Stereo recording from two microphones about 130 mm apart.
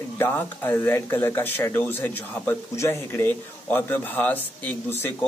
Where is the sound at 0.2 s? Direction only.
15° left (ahead or behind).